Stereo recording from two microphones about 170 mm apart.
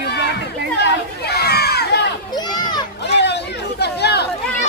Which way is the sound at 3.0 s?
85° left.